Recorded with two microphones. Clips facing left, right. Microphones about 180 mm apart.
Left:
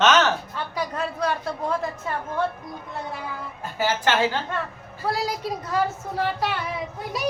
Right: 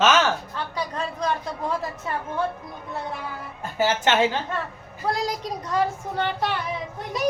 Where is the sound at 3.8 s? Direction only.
20° right (ahead or behind).